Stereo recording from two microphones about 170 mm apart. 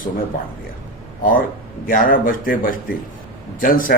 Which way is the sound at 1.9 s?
60° left (ahead or behind).